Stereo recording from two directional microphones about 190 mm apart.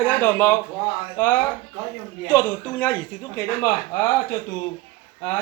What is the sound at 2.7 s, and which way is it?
Speech, 5° left (ahead or behind).